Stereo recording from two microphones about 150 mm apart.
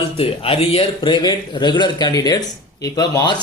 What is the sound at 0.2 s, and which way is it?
A man's voice, 40° left (ahead or behind).